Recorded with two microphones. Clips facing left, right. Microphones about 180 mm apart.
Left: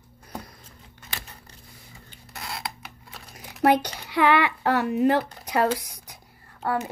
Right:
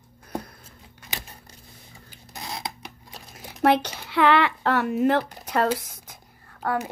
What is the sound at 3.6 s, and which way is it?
Speech, 10° left (ahead or behind).